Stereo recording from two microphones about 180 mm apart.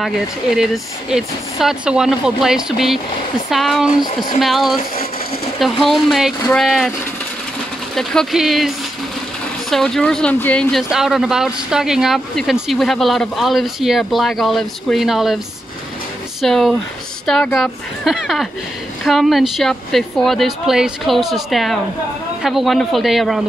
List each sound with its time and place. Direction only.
0.0 s speech: 5° right (ahead or behind)
7.9 s speech: 5° left (ahead or behind)